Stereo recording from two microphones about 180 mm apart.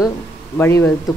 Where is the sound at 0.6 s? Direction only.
15° left (ahead or behind).